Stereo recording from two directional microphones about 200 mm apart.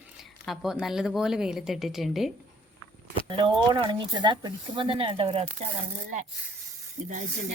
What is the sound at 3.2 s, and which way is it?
Speech, 25° right (ahead or behind).